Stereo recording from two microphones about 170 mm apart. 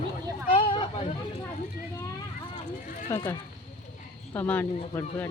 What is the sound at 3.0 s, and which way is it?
Speech, 20° left (ahead or behind).